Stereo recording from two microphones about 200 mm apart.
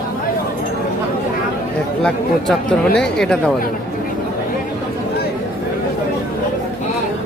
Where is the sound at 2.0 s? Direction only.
5° left (ahead or behind).